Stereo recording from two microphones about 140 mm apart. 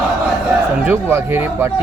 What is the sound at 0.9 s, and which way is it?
Speech, 15° right (ahead or behind).